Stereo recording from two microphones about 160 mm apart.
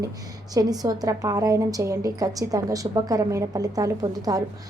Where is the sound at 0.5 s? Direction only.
25° right (ahead or behind).